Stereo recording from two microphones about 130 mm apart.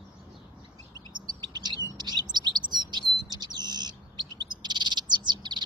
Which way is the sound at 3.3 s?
35° right (ahead or behind).